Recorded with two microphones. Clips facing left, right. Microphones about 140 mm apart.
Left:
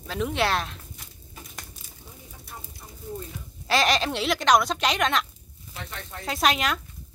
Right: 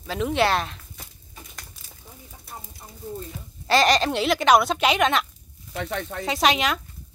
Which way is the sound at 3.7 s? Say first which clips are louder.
Right 4 dB; centre (ahead or behind).